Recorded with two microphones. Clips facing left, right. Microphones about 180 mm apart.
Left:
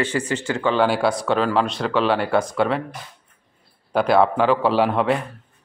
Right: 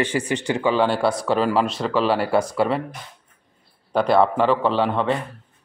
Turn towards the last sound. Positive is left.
turn(degrees=10)  # may be behind; listen again after turning